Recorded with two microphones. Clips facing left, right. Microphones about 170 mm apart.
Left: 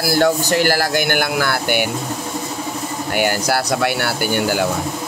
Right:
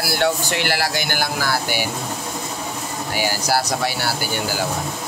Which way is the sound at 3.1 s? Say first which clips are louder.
Left 3 dB; 60° left (ahead or behind).